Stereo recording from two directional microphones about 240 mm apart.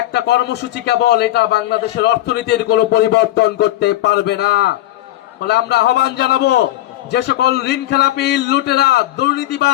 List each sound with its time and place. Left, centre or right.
0.1 s a man's voice: left